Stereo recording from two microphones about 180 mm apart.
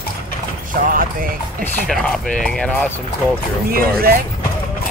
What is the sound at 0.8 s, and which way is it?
Speech, 50° right (ahead or behind).